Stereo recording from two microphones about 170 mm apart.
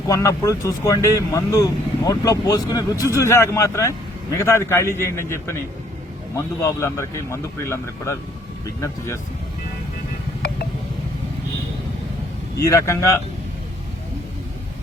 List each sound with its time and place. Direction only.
0.1 s speech: 20° left (ahead or behind)
12.5 s speech: 20° left (ahead or behind)